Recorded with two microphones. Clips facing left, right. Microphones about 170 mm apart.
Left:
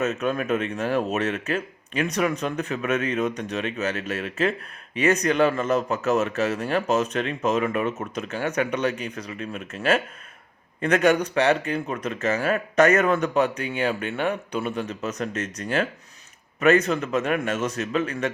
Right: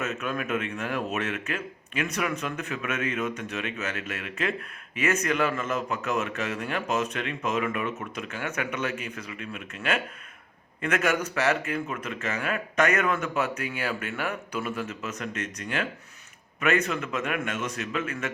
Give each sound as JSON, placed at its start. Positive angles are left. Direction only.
{"t": 0.0, "sound": "a man's voice", "side_deg": 35}